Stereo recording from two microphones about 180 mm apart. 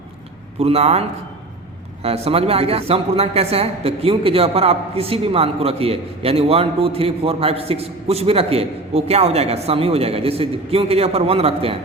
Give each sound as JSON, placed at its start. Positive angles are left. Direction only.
{"t": 0.6, "sound": "speech", "side_deg": -35}
{"t": 2.0, "sound": "speech", "side_deg": -35}